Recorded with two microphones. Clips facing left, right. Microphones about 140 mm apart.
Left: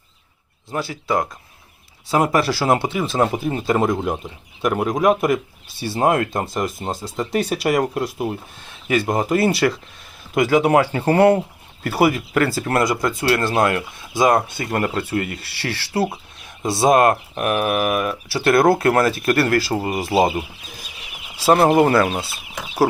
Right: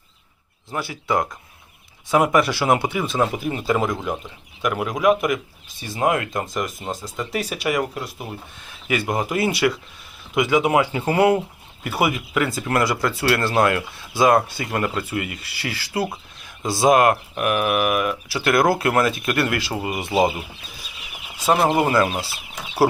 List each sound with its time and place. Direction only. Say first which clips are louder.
0.7 s speech: left 1 dB; 25° left (ahead or behind)
3.2 s speech: left 3 dB; 35° left (ahead or behind)
8.9 s speech: left 4 dB; 30° left (ahead or behind)
12.8 s speech: left 1 dB; 20° left (ahead or behind)
14.6 s speech: left 2 dB; 35° left (ahead or behind)
21.3 s speech: left 4 dB; 35° left (ahead or behind)